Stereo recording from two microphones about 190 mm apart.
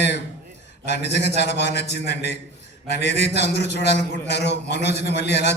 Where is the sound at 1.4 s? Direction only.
60° left (ahead or behind).